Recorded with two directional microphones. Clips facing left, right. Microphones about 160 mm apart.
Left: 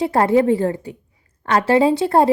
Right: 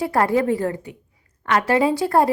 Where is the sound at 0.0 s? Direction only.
25° left (ahead or behind).